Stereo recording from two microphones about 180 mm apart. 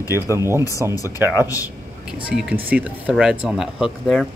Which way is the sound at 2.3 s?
5° right (ahead or behind).